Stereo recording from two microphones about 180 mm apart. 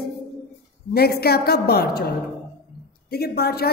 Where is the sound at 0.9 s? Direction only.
60° left (ahead or behind).